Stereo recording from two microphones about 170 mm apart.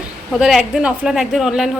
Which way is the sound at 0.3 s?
Centre (ahead or behind).